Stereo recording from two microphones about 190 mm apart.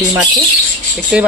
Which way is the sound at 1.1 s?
5° right (ahead or behind).